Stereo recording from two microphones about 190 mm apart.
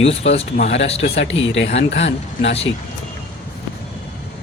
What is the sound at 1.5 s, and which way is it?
Speech, 75° left (ahead or behind).